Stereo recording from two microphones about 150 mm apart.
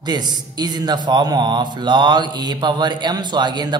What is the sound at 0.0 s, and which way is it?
Mantra, 30° right (ahead or behind).